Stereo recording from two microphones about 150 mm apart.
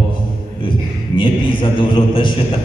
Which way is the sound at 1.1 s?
35° left (ahead or behind).